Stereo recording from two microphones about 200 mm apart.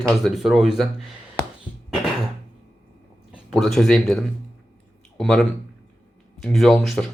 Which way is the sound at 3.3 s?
Centre (ahead or behind).